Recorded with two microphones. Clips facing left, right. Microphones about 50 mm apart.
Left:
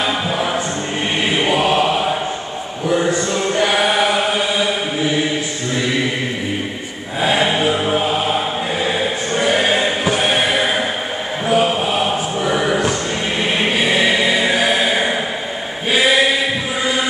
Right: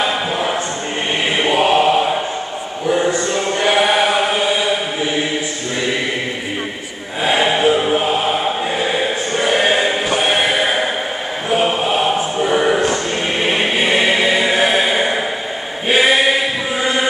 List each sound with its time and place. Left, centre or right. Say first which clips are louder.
0.0 s music: right 1 dB; centre
1.4 s chant: right 3 dB; centre
3.6 s chant: right 3 dB; centre
7.2 s mantra: right 1 dB; centre
10.1 s music: right 2 dB; centre
11.5 s chant: even; centre
12.5 s a sound: right 3 dB; centre
13.7 s choir: even; right